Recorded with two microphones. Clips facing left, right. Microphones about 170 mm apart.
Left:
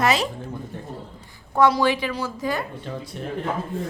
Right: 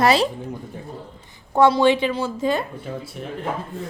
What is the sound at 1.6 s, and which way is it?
A woman's voice, 25° right (ahead or behind).